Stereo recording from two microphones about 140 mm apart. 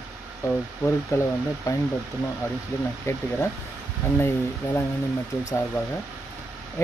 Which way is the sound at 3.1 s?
20° left (ahead or behind).